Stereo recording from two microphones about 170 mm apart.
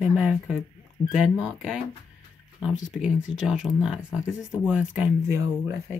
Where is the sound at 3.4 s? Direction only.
5° right (ahead or behind).